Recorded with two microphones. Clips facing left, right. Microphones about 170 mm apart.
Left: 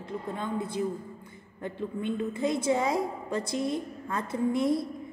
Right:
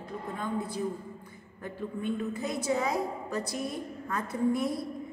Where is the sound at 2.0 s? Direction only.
25° left (ahead or behind).